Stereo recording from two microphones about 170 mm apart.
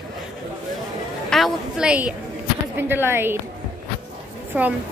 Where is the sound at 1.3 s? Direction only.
Centre (ahead or behind).